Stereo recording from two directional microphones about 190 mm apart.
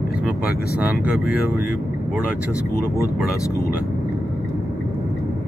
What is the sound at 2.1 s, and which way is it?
Speech, 5° right (ahead or behind).